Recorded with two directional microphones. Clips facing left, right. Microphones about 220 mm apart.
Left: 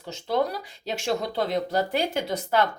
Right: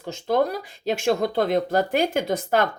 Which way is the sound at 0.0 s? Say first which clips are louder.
Right 4 dB; 50° right (ahead or behind).